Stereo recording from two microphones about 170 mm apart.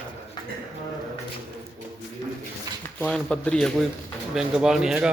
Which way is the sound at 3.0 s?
5° left (ahead or behind).